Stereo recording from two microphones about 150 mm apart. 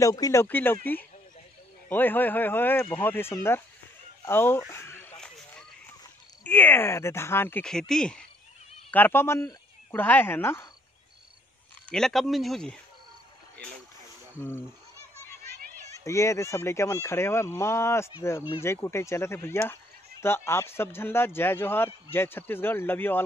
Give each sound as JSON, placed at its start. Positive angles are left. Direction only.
{"t": 0.0, "sound": "speech", "side_deg": 20}
{"t": 1.9, "sound": "speech", "side_deg": 15}
{"t": 4.6, "sound": "a sound", "side_deg": 15}
{"t": 6.4, "sound": "speech", "side_deg": 10}
{"t": 11.9, "sound": "speech", "side_deg": 0}
{"t": 16.0, "sound": "speech", "side_deg": 20}